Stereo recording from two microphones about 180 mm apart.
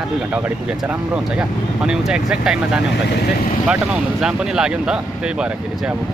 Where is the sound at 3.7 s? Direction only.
5° right (ahead or behind).